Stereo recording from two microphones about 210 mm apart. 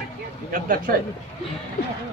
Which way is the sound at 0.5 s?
40° right (ahead or behind).